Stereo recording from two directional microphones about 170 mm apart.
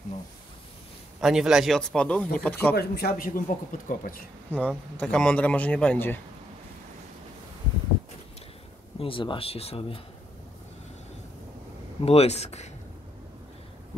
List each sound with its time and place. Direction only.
1.2 s speech: 5° right (ahead or behind)
2.7 s speech: 70° left (ahead or behind); by 4.2 s 55° left (ahead or behind)
4.5 s a man's voice: 10° left (ahead or behind)
9.0 s speech: 30° left (ahead or behind)
12.0 s speech: 35° left (ahead or behind)